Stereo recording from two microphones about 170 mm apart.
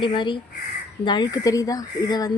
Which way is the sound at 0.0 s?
30° left (ahead or behind).